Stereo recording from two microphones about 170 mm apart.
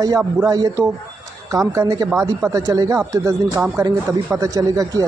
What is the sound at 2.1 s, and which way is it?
Speech, 5° right (ahead or behind).